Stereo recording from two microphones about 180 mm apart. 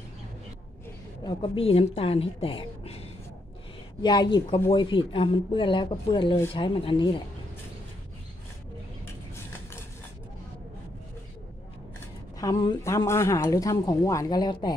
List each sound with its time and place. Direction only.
1.2 s a woman's voice: 30° left (ahead or behind)
12.4 s speech: 20° left (ahead or behind)